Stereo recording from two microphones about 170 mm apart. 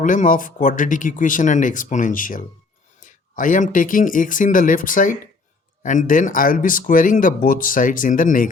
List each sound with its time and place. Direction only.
0.0 s speech: 50° left (ahead or behind)